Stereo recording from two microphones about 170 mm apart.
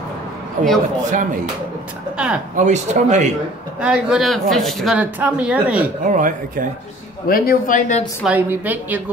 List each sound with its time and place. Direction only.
1.1 s speech: 50° right (ahead or behind)
2.1 s speech: 5° right (ahead or behind)
2.5 s speech: 45° right (ahead or behind)
3.8 s speech: 5° right (ahead or behind)
6.0 s speech: 50° right (ahead or behind)
7.2 s a man's voice: 60° left (ahead or behind)
8.2 s a woman's voice: 10° right (ahead or behind)